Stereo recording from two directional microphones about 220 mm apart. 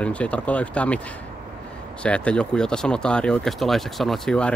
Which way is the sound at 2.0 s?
5° left (ahead or behind).